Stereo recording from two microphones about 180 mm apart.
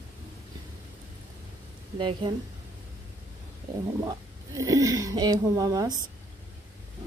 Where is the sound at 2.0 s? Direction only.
30° right (ahead or behind).